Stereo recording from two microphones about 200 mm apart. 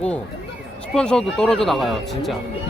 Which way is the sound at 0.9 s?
5° left (ahead or behind).